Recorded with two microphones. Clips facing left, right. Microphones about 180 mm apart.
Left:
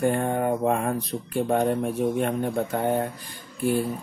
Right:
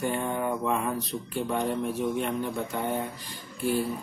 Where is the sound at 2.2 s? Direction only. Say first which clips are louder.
Left 5 dB; 50° left (ahead or behind).